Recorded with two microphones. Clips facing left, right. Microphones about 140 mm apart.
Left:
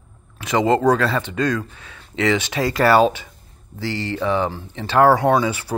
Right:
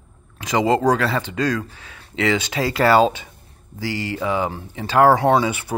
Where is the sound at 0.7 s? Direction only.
30° right (ahead or behind); by 4.5 s 10° right (ahead or behind).